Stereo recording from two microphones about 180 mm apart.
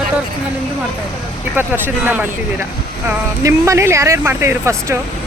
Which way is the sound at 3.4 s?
15° right (ahead or behind).